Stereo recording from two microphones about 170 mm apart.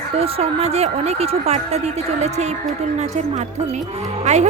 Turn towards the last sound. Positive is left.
turn(degrees=-40)  # may be behind; listen again after turning